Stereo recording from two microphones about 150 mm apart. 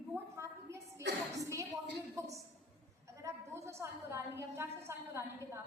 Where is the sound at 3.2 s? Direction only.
20° right (ahead or behind).